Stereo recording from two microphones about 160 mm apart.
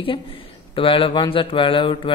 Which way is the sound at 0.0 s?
35° left (ahead or behind).